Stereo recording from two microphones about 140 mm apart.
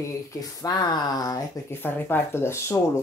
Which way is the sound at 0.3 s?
25° left (ahead or behind).